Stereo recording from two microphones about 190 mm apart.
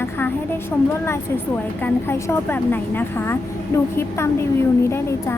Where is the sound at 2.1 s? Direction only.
10° left (ahead or behind).